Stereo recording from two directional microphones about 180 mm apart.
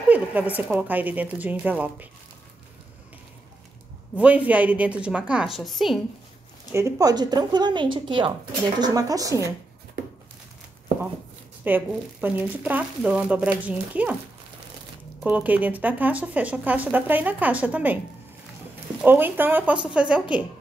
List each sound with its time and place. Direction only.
0.1 s speech: 10° right (ahead or behind)
4.1 s a woman's voice: 10° right (ahead or behind)
6.7 s a woman's voice: 15° right (ahead or behind)
11.6 s speech: 10° right (ahead or behind)
15.2 s speech: 10° right (ahead or behind)
18.9 s speech: 10° right (ahead or behind)